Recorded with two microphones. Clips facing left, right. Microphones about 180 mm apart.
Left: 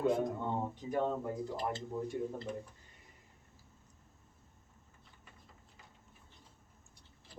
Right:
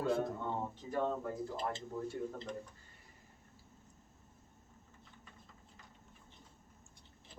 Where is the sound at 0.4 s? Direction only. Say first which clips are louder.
Left 3 dB; 15° left (ahead or behind).